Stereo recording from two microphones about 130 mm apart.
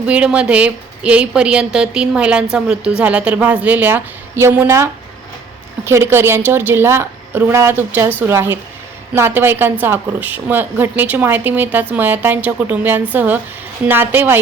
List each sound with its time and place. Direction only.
0.0 s a woman's voice: 10° right (ahead or behind)